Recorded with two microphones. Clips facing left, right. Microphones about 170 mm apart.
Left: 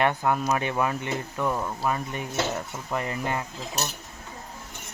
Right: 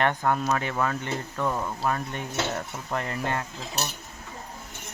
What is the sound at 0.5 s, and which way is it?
Speech, 20° left (ahead or behind).